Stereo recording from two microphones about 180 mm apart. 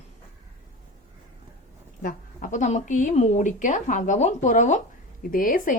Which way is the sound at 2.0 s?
50° left (ahead or behind).